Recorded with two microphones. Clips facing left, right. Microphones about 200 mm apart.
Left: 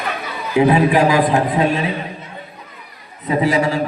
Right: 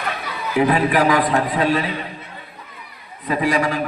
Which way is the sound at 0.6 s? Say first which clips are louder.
Left 4 dB; 25° left (ahead or behind).